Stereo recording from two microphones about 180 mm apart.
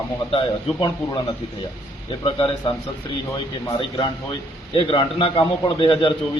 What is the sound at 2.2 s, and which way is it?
Speech, 25° left (ahead or behind).